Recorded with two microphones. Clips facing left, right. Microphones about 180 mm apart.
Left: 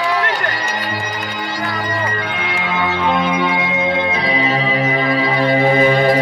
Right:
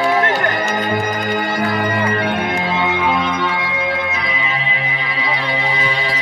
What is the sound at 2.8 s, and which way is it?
Music, 15° right (ahead or behind).